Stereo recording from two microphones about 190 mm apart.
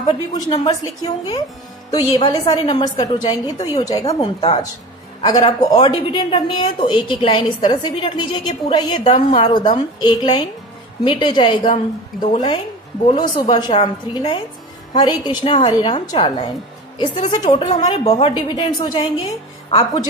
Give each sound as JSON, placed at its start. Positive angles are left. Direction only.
{"t": 0.0, "sound": "speech", "side_deg": 25}